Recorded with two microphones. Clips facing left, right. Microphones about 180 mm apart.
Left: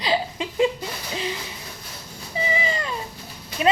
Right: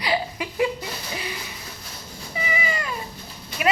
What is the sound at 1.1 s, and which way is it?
Hoot, 25° left (ahead or behind).